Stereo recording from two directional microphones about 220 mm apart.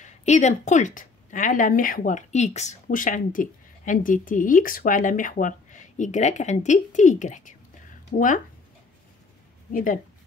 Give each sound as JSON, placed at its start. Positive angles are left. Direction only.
{"t": 0.0, "sound": "speech", "side_deg": 30}
{"t": 9.7, "sound": "speech", "side_deg": 40}